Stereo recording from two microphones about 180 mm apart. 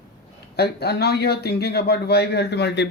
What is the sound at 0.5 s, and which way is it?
Speech, 65° left (ahead or behind).